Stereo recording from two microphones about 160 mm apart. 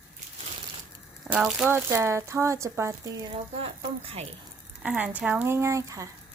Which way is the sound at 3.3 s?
40° right (ahead or behind).